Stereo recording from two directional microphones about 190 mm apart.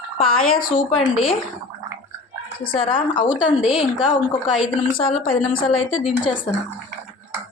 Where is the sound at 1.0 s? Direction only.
Centre (ahead or behind).